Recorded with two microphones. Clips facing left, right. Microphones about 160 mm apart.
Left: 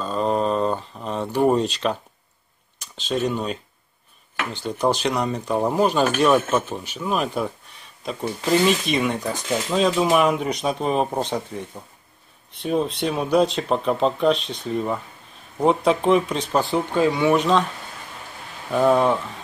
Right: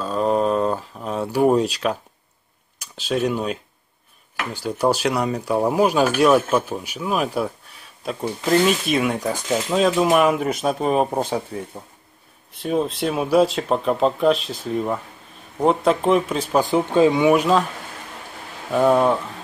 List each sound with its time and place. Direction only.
0.0 s a sound: 5° right (ahead or behind)
2.8 s speech: 10° right (ahead or behind)
16.7 s speech: 20° right (ahead or behind)
18.7 s speech: 5° right (ahead or behind)